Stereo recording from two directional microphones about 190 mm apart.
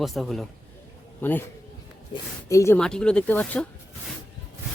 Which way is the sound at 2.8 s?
5° left (ahead or behind).